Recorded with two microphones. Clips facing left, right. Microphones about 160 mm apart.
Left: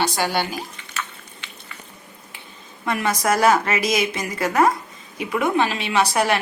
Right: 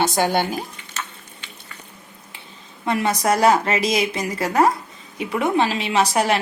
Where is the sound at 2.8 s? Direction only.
30° right (ahead or behind).